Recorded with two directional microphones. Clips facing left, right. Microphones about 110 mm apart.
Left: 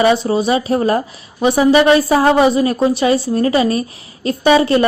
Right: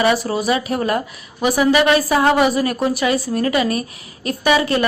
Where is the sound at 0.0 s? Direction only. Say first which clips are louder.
Left 4 dB; 25° left (ahead or behind).